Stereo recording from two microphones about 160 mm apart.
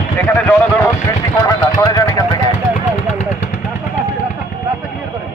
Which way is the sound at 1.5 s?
25° left (ahead or behind).